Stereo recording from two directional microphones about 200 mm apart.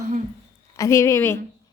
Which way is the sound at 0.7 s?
15° left (ahead or behind).